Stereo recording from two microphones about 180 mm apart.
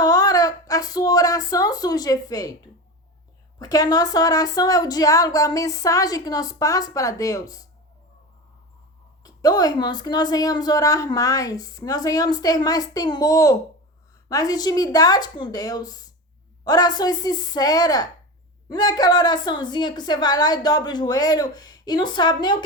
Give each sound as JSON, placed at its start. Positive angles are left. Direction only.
{"t": 0.0, "sound": "speech", "side_deg": 20}
{"t": 3.6, "sound": "a woman's voice", "side_deg": 20}
{"t": 9.2, "sound": "a woman's voice", "side_deg": 20}